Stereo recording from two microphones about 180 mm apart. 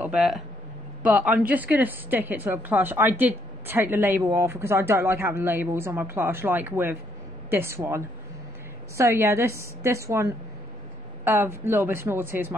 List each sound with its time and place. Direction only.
0.0 s a woman's voice: 5° right (ahead or behind)
11.2 s a woman's voice: 15° right (ahead or behind)